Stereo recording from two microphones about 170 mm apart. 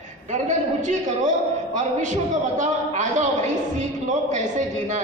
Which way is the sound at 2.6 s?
45° right (ahead or behind).